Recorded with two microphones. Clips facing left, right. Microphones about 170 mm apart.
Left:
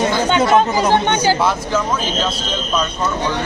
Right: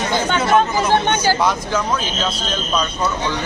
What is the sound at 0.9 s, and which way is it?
Speech, 15° left (ahead or behind).